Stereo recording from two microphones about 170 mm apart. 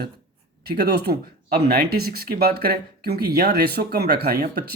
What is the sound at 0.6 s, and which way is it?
Speech, 70° right (ahead or behind).